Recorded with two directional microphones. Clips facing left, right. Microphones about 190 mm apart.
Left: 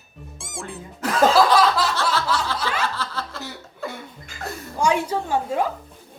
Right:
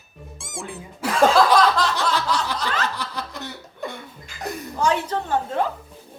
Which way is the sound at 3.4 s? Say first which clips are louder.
Even; 5° left (ahead or behind).